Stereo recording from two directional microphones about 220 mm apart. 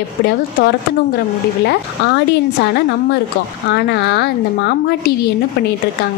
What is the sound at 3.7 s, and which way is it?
A woman's voice, 50° left (ahead or behind).